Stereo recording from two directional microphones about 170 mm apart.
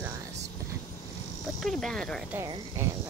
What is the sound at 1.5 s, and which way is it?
Speech, centre (ahead or behind).